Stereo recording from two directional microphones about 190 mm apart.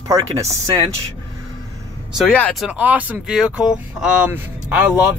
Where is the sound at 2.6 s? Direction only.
10° right (ahead or behind).